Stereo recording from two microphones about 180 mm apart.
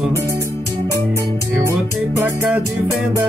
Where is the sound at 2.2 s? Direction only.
10° right (ahead or behind).